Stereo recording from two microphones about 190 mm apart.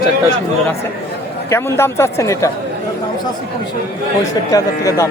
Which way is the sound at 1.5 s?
15° left (ahead or behind).